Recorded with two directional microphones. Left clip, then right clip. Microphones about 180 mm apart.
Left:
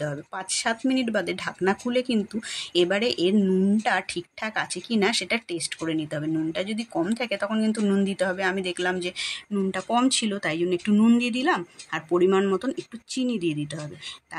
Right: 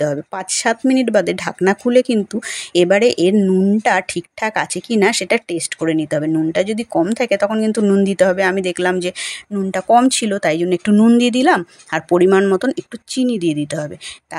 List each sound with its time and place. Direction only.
0.0 s speech: 40° right (ahead or behind)